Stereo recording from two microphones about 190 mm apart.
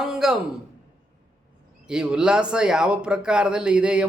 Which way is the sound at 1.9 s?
5° right (ahead or behind).